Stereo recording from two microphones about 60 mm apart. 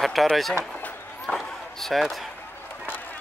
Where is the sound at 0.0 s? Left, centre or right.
Centre.